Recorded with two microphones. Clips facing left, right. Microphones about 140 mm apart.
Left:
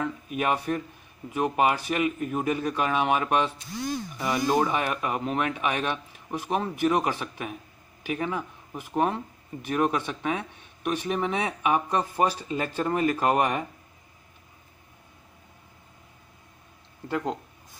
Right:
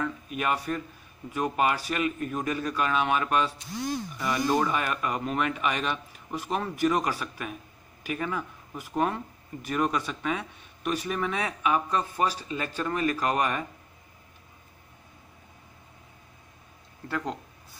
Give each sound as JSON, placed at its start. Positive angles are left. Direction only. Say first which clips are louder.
{"t": 0.3, "sound": "speech", "louder": "left 3 dB", "side_deg": 15}
{"t": 17.1, "sound": "speech", "louder": "left 3 dB", "side_deg": 10}